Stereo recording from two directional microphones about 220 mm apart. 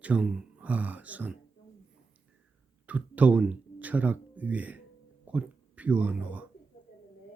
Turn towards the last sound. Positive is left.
turn(degrees=-5)  # may be behind; listen again after turning